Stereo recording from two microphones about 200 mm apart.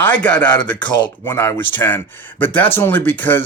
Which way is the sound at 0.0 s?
5° left (ahead or behind).